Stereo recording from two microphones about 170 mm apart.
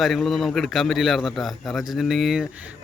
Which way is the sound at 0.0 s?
Centre (ahead or behind).